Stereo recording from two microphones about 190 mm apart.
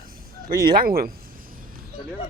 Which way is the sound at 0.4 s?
50° right (ahead or behind).